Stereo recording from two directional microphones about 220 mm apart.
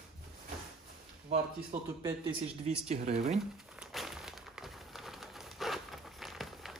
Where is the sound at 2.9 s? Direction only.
30° right (ahead or behind).